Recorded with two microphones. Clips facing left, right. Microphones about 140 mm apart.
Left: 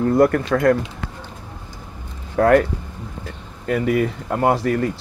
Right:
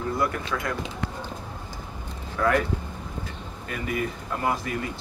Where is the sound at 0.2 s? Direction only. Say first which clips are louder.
Left 12 dB; 55° left (ahead or behind).